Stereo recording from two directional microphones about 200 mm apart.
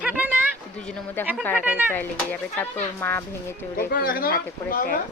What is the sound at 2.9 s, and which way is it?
Speech, 10° left (ahead or behind).